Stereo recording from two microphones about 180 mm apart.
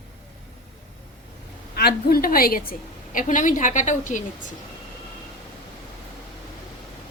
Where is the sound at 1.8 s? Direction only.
60° left (ahead or behind); by 4.2 s 45° left (ahead or behind).